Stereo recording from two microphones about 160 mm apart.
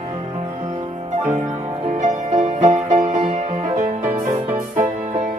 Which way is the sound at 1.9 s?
50° right (ahead or behind).